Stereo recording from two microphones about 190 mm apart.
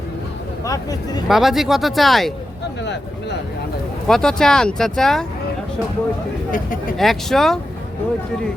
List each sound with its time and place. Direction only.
0.6 s speech: 20° left (ahead or behind)
1.3 s speech: centre (ahead or behind)
2.8 s speech: 65° left (ahead or behind)
4.0 s speech: 5° left (ahead or behind)
7.0 s speech: centre (ahead or behind)